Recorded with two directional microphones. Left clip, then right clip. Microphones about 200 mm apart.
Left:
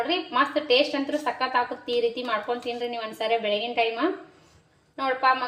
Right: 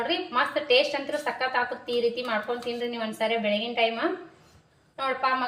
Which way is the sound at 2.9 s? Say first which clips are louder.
Left 2 dB; 35° left (ahead or behind).